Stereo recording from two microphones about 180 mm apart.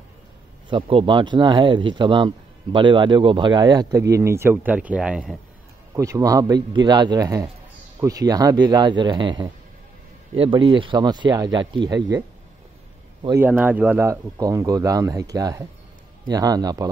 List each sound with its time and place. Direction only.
0.7 s speech: 30° right (ahead or behind); by 5.4 s 5° right (ahead or behind)
5.9 s speech: 20° right (ahead or behind)
13.3 s speech: 10° right (ahead or behind)